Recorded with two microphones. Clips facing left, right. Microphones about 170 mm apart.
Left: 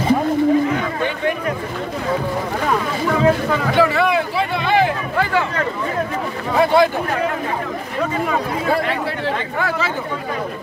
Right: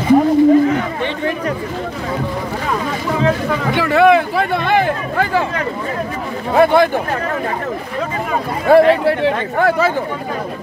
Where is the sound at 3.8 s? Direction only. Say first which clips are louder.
Right 6 dB; 60° right (ahead or behind).